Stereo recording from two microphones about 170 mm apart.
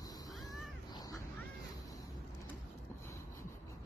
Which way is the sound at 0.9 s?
20° left (ahead or behind).